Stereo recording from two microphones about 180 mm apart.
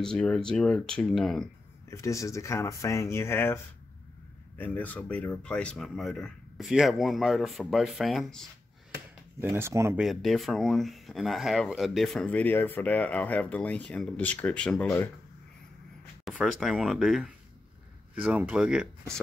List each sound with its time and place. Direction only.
0.0 s speech: 5° left (ahead or behind)
1.9 s speech: 15° left (ahead or behind); by 8.5 s centre (ahead or behind)
9.4 s speech: 15° right (ahead or behind)
9.9 s speech: centre (ahead or behind)
16.3 s speech: centre (ahead or behind)